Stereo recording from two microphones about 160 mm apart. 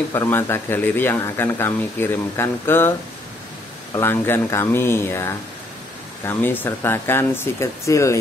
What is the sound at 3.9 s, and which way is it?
Speech, 15° left (ahead or behind).